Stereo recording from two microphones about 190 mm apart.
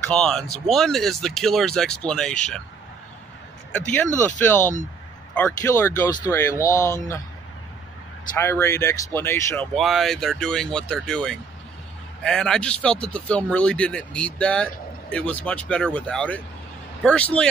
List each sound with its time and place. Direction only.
0.1 s speech: 5° left (ahead or behind)
4.6 s speech: 40° left (ahead or behind)
5.3 s speech: 15° left (ahead or behind)
8.4 s speech: 15° left (ahead or behind)
9.8 s speech: centre (ahead or behind)